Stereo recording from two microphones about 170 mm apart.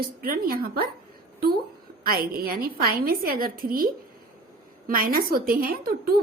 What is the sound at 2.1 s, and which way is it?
A woman's voice, 60° right (ahead or behind).